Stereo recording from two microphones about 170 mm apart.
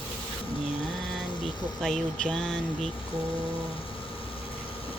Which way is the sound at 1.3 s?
30° left (ahead or behind).